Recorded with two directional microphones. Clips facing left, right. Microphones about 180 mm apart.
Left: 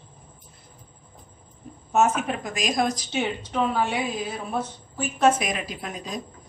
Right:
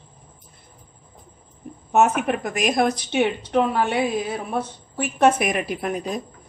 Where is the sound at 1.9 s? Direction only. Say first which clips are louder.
Right 3 dB; 60° right (ahead or behind).